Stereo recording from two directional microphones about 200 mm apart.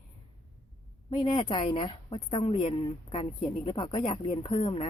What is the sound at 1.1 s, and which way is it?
Speech, 25° left (ahead or behind).